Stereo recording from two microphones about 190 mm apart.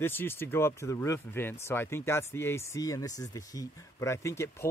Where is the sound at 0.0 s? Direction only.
10° left (ahead or behind).